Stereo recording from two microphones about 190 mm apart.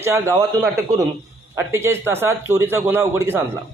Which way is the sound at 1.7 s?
15° right (ahead or behind).